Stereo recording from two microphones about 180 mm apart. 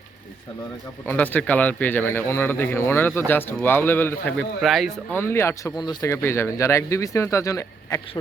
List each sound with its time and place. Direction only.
1.0 s speech: 10° left (ahead or behind)
5.1 s speech: 15° left (ahead or behind)